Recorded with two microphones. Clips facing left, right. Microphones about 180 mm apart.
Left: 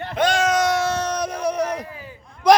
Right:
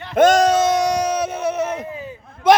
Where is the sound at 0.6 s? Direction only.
20° right (ahead or behind); by 1.8 s 5° right (ahead or behind).